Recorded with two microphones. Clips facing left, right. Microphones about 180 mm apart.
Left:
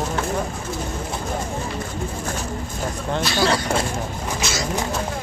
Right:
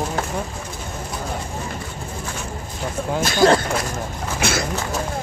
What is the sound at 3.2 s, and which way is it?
Speech, 50° right (ahead or behind).